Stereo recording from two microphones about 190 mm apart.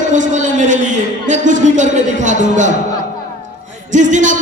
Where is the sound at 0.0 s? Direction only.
40° right (ahead or behind).